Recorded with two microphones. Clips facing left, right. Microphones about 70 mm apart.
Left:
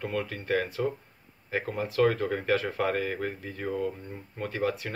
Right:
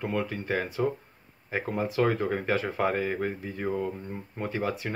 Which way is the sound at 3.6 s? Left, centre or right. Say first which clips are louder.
Right 1 dB; right.